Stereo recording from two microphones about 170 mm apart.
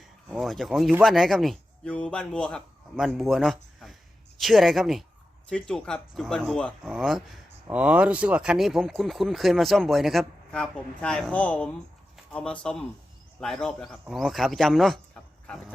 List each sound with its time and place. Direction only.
0.3 s speech: centre (ahead or behind)